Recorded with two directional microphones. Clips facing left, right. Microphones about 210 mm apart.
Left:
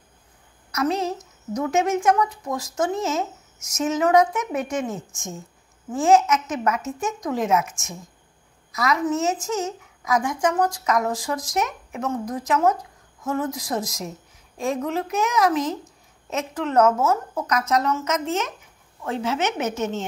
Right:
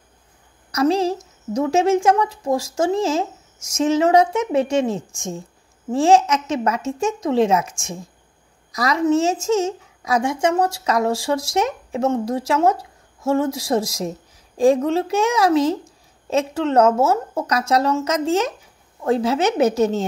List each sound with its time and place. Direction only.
0.7 s a woman's voice: 30° right (ahead or behind)